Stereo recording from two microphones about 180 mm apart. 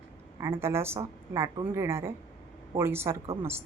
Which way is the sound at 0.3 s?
15° right (ahead or behind).